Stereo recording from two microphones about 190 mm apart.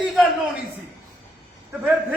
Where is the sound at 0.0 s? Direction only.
Centre (ahead or behind).